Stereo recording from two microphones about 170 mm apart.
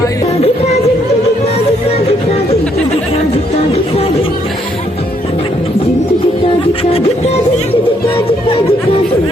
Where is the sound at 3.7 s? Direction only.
35° left (ahead or behind).